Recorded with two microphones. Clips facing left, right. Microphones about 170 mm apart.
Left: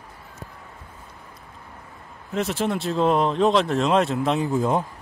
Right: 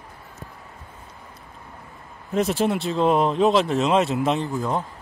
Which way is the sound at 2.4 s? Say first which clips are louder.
Right 3 dB; 15° right (ahead or behind).